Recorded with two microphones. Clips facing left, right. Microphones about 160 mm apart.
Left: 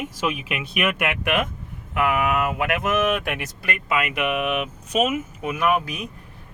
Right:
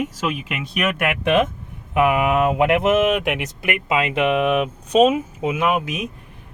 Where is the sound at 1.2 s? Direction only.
20° right (ahead or behind).